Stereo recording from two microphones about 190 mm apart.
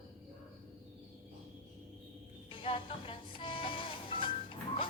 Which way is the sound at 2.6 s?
25° left (ahead or behind).